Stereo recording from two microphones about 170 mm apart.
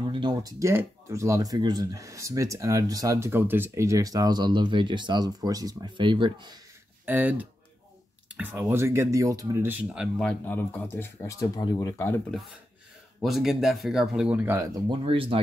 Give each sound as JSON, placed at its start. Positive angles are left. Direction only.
{"t": 0.1, "sound": "speech", "side_deg": -25}
{"t": 7.1, "sound": "speech", "side_deg": -10}
{"t": 10.4, "sound": "speech", "side_deg": 10}
{"t": 12.0, "sound": "speech", "side_deg": 10}
{"t": 13.2, "sound": "speech", "side_deg": 0}
{"t": 15.0, "sound": "speech", "side_deg": -35}